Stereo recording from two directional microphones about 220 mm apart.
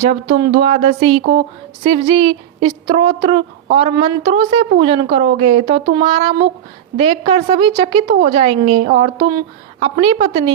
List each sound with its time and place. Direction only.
0.3 s a woman's voice: 25° right (ahead or behind)